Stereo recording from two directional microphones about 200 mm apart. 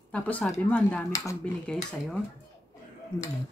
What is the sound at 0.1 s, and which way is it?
Speech, 5° left (ahead or behind).